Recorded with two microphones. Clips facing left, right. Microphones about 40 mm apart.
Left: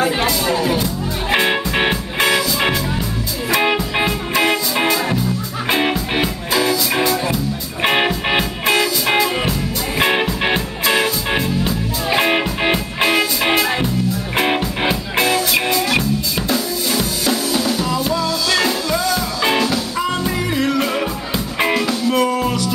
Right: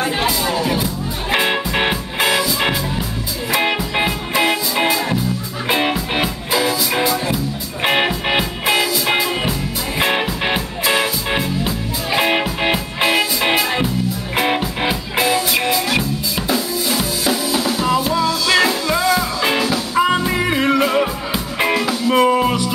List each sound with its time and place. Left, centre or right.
0.2 s speech: centre
1.3 s music: centre
19.4 s music: centre
20.4 s music: right
20.8 s music: centre
22.1 s music: right